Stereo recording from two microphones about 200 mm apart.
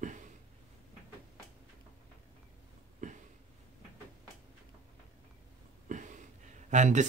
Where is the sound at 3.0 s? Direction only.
40° right (ahead or behind).